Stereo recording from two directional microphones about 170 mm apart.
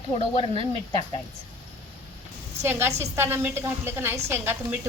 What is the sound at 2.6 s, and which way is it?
A woman's voice, 15° right (ahead or behind).